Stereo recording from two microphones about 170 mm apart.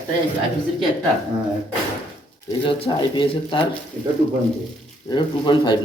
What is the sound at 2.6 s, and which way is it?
Speech, 30° left (ahead or behind).